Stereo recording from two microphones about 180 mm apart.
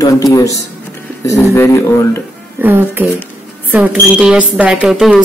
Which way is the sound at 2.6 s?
10° right (ahead or behind).